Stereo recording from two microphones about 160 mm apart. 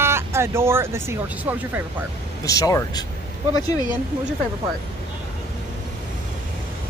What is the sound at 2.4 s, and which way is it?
Speech, 20° left (ahead or behind).